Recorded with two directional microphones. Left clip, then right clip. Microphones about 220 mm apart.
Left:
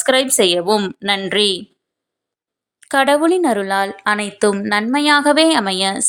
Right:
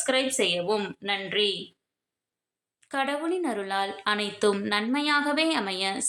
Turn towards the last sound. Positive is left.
turn(degrees=35)  # may be behind; listen again after turning